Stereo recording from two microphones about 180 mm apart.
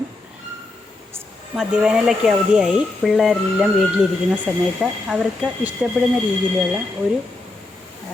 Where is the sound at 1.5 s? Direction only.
5° right (ahead or behind).